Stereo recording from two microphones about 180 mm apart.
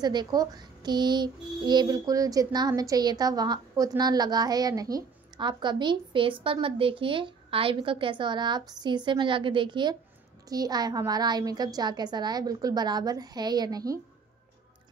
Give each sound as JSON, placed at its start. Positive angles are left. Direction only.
{"t": 0.0, "sound": "a child's voice", "side_deg": -25}